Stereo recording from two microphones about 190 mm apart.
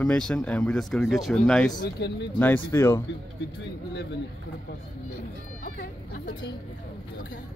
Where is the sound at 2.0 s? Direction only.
65° left (ahead or behind).